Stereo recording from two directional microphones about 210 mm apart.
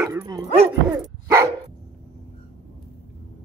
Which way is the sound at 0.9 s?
15° right (ahead or behind).